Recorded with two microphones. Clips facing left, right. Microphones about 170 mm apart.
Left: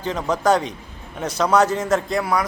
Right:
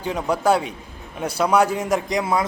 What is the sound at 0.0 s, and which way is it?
A man's voice, 10° right (ahead or behind).